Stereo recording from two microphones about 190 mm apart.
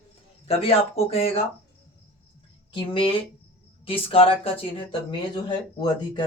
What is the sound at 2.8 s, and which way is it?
Speech, 25° left (ahead or behind).